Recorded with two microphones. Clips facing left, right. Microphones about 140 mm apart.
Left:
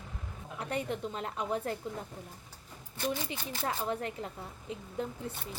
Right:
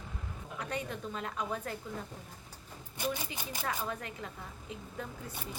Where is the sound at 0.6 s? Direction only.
30° left (ahead or behind).